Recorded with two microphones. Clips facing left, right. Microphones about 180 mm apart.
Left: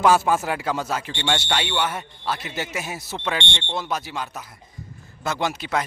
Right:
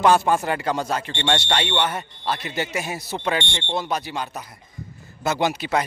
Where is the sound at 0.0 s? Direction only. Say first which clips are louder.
Right 1 dB; 5° left (ahead or behind).